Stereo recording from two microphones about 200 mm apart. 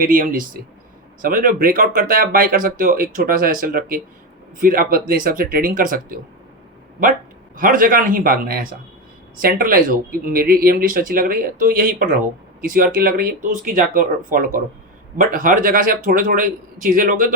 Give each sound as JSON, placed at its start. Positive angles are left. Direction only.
{"t": 0.0, "sound": "speech", "side_deg": -45}
{"t": 7.5, "sound": "speech", "side_deg": -45}